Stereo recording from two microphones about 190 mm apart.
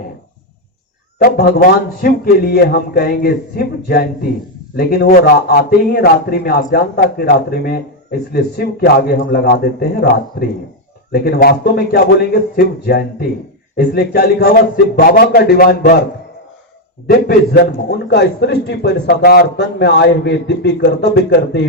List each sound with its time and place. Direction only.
1.2 s a man's voice: 55° left (ahead or behind)
17.1 s a man's voice: 55° left (ahead or behind)